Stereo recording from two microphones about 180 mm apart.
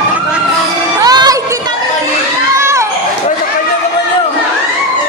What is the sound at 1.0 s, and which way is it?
Music, 20° right (ahead or behind).